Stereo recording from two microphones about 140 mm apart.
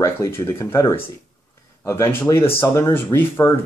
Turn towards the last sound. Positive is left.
turn(degrees=15)  # may be behind; listen again after turning